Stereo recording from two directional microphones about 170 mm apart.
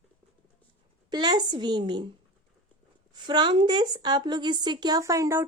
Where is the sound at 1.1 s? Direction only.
25° right (ahead or behind).